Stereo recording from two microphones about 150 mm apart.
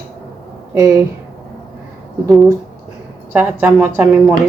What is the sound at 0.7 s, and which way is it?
Speech, 20° right (ahead or behind).